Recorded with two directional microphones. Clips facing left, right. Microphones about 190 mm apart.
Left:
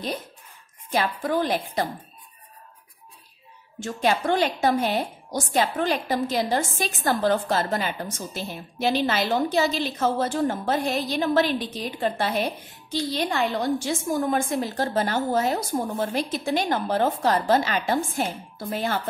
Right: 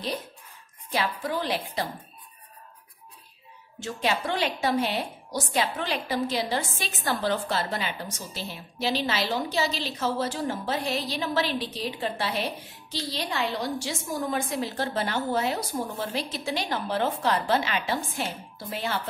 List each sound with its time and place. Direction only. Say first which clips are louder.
0.9 s a woman's voice: left 4 dB; 50° left (ahead or behind)
3.8 s a woman's voice: left 4 dB; 45° left (ahead or behind)